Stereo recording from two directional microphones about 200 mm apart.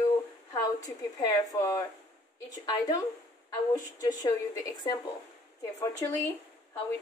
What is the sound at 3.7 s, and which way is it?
Speech, 15° left (ahead or behind).